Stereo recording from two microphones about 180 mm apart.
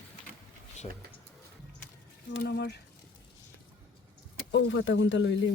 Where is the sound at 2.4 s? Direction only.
65° left (ahead or behind).